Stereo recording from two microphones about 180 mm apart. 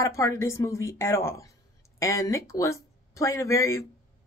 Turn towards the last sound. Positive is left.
turn(degrees=15)  # may be behind; listen again after turning